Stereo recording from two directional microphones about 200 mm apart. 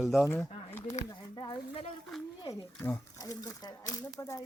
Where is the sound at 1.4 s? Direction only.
25° left (ahead or behind).